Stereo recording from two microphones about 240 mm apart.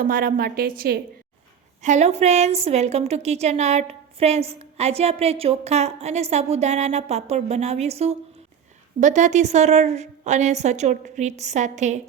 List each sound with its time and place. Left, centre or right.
0.0 s a woman's voice: right